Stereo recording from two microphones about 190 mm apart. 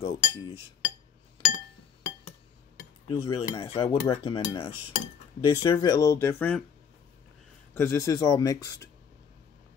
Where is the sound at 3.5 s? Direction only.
30° left (ahead or behind).